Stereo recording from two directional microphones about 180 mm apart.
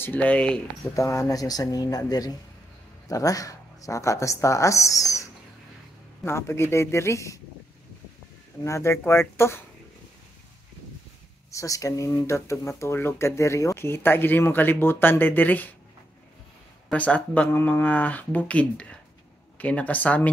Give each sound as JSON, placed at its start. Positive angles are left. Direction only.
{"t": 0.0, "sound": "speech", "side_deg": 10}
{"t": 0.9, "sound": "speech", "side_deg": 15}
{"t": 8.6, "sound": "speech", "side_deg": 15}
{"t": 11.5, "sound": "speech", "side_deg": 20}
{"t": 16.9, "sound": "speech", "side_deg": 5}